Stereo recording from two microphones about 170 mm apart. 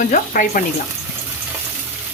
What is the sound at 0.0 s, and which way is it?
Speech, 50° left (ahead or behind).